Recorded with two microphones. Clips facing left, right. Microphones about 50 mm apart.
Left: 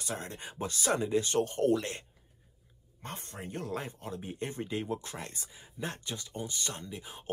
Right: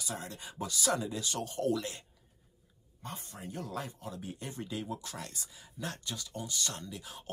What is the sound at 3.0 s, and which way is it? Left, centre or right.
Speech, left.